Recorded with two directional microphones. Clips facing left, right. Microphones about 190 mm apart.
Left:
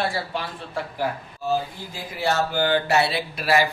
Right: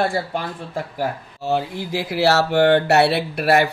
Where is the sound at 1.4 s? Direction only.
75° right (ahead or behind).